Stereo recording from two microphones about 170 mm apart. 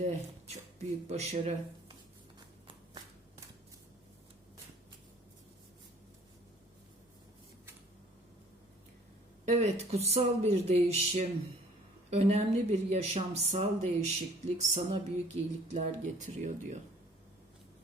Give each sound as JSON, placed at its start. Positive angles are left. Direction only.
{"t": 0.0, "sound": "speech", "side_deg": -40}
{"t": 9.5, "sound": "speech", "side_deg": -40}